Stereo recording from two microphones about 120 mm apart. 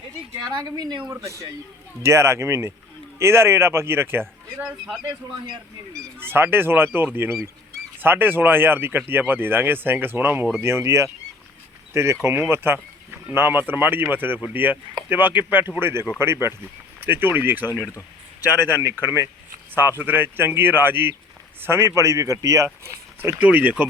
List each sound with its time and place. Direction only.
0.4 s speech: 35° right (ahead or behind)
6.1 s speech: 20° right (ahead or behind)
12.2 s speech: 20° right (ahead or behind)
23.4 s speech: 10° right (ahead or behind)